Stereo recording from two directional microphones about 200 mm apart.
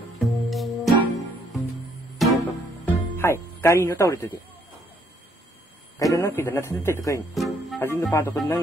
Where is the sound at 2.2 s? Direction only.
Centre (ahead or behind).